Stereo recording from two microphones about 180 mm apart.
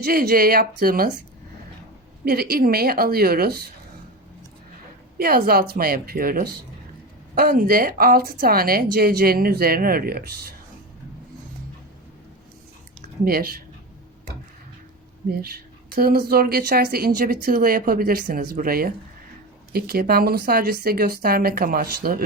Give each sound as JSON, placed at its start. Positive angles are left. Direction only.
{"t": 0.0, "sound": "speech", "side_deg": -55}
{"t": 2.2, "sound": "speech", "side_deg": -60}
{"t": 5.1, "sound": "speech", "side_deg": -55}
{"t": 13.2, "sound": "speech", "side_deg": -55}
{"t": 15.3, "sound": "speech", "side_deg": -55}